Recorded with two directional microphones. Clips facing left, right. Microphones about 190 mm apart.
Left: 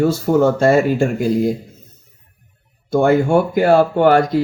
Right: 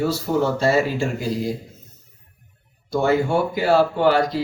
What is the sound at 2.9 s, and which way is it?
Speech, 50° left (ahead or behind).